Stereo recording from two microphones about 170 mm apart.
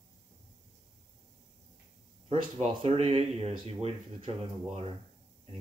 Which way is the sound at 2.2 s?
35° right (ahead or behind).